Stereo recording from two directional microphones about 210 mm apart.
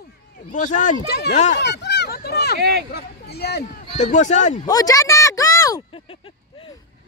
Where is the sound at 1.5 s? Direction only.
55° left (ahead or behind).